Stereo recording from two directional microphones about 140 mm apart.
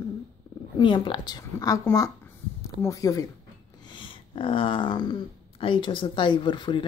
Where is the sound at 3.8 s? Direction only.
35° left (ahead or behind).